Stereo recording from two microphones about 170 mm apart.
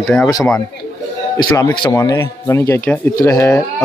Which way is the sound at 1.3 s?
20° left (ahead or behind).